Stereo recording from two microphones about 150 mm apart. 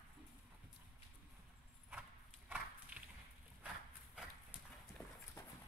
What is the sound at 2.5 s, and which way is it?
Horse, 10° right (ahead or behind).